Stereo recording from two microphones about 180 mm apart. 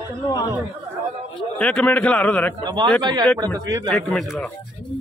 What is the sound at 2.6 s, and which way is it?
A man's voice, 25° right (ahead or behind).